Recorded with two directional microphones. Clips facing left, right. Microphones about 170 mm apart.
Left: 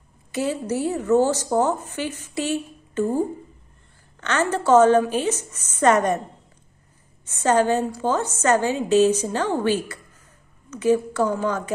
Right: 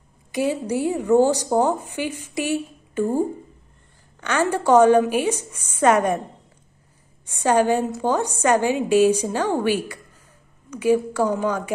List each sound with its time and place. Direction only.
0.3 s speech: 15° right (ahead or behind)
7.2 s speech: 15° right (ahead or behind)